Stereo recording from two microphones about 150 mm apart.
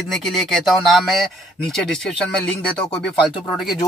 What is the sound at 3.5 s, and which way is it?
Speech, centre (ahead or behind).